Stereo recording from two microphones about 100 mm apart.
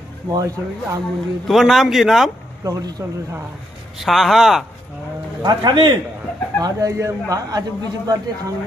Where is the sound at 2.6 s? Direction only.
40° right (ahead or behind).